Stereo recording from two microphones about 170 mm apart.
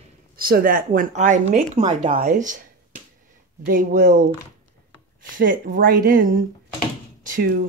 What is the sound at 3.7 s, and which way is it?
Speech, 50° right (ahead or behind).